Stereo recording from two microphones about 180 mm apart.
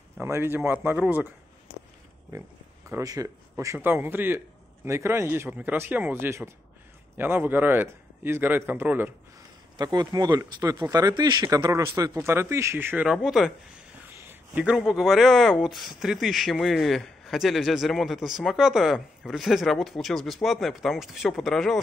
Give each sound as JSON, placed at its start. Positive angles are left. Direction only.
{"t": 0.2, "sound": "a man's voice", "side_deg": -15}
{"t": 2.9, "sound": "a man's voice", "side_deg": -20}
{"t": 9.8, "sound": "a man's voice", "side_deg": -20}
{"t": 14.5, "sound": "speech", "side_deg": -5}